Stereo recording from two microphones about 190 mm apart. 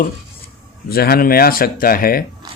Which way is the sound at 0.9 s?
55° left (ahead or behind).